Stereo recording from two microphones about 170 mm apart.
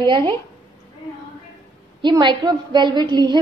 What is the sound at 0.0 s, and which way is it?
Speech, 25° right (ahead or behind).